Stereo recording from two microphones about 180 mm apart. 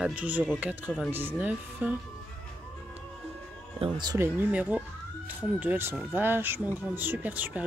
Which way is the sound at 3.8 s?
25° right (ahead or behind).